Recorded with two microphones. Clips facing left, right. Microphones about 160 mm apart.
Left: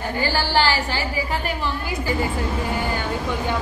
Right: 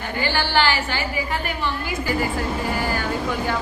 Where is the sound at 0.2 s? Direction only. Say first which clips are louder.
Even; 40° left (ahead or behind).